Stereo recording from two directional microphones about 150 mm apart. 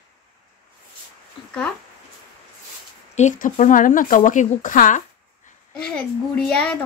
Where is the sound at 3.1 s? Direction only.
55° left (ahead or behind).